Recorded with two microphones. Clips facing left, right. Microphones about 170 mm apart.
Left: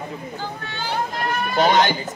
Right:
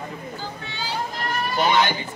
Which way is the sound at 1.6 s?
45° left (ahead or behind).